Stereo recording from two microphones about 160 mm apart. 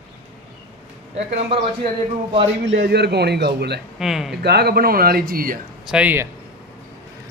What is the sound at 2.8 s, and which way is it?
Speech, 90° right.